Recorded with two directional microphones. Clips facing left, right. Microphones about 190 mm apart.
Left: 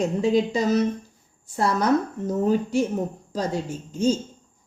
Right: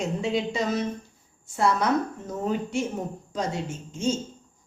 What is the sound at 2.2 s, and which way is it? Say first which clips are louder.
A woman's voice: left 6 dB; 40° left (ahead or behind).